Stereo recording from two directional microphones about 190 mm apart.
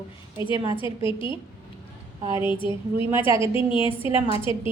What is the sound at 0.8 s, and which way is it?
Speech, 25° left (ahead or behind).